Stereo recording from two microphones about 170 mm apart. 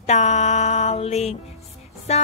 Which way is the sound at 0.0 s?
40° left (ahead or behind).